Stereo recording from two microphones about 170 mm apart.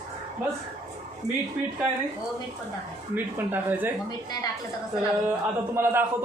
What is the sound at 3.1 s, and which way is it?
Speech, 10° right (ahead or behind).